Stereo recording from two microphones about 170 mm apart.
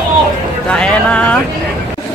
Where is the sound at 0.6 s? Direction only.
5° left (ahead or behind).